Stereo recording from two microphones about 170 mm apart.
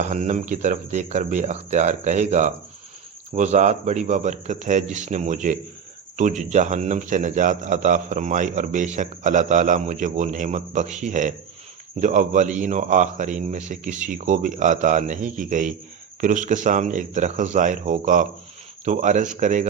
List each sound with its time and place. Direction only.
0.0 s a man's voice: 45° right (ahead or behind)